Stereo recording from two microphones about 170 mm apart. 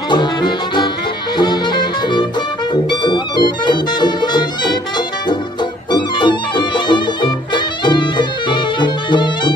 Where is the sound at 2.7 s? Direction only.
25° left (ahead or behind).